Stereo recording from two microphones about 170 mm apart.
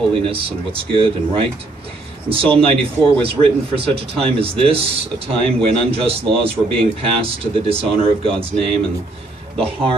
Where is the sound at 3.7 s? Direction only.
35° right (ahead or behind).